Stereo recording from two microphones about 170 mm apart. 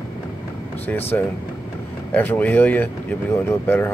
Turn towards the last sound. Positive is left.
turn(degrees=15)  # may be behind; listen again after turning